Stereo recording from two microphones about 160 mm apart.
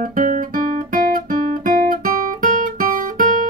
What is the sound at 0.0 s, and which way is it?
Guitar, 55° right (ahead or behind).